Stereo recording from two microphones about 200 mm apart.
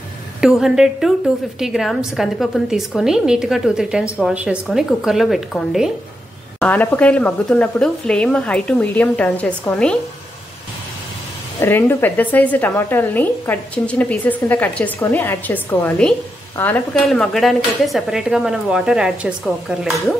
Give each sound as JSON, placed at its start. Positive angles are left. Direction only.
{"t": 0.4, "sound": "a woman's voice", "side_deg": 0}
{"t": 11.6, "sound": "a woman's voice", "side_deg": 10}